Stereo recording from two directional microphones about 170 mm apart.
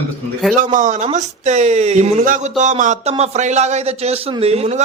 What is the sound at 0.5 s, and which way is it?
Speech, 50° right (ahead or behind).